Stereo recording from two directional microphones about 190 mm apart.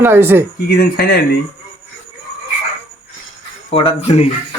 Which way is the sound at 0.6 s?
55° left (ahead or behind).